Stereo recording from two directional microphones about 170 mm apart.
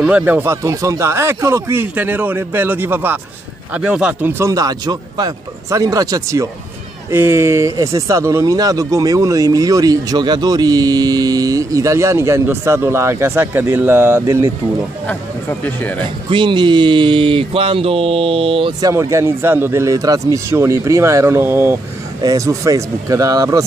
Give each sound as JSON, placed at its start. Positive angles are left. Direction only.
{"t": 0.0, "sound": "speech", "side_deg": -10}
{"t": 15.6, "sound": "speech", "side_deg": 10}
{"t": 16.3, "sound": "speech", "side_deg": -30}